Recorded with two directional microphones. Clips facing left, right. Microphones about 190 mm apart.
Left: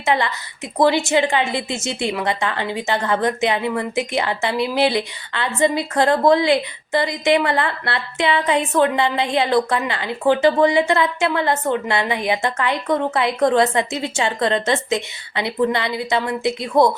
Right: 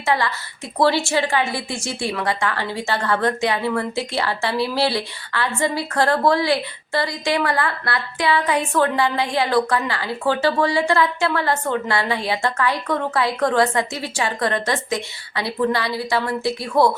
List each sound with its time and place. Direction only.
0.0 s a woman's voice: 20° left (ahead or behind)